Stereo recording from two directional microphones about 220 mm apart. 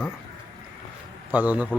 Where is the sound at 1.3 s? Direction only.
5° right (ahead or behind).